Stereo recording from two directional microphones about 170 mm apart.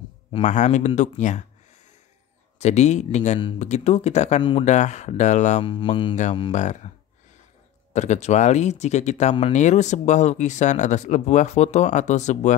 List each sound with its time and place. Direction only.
0.3 s speech: 45° left (ahead or behind)
2.6 s speech: 40° left (ahead or behind)
4.4 s speech: 30° left (ahead or behind)
4.6 s speech: 45° left (ahead or behind)
5.6 s speech: 30° left (ahead or behind)
6.5 s speech: 45° left (ahead or behind)
7.9 s speech: 40° left (ahead or behind)